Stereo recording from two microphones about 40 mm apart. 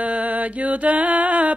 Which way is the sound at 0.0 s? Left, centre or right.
Right.